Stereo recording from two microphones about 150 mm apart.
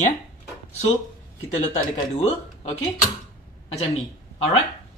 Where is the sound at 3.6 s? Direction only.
45° left (ahead or behind).